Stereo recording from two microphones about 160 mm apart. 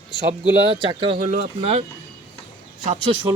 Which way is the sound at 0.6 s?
30° right (ahead or behind).